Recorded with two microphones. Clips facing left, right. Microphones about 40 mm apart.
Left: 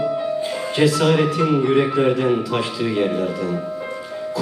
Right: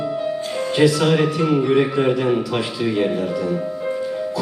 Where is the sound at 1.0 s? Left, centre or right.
Centre.